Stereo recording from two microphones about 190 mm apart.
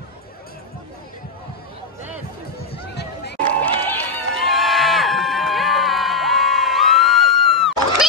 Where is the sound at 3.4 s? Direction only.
10° left (ahead or behind).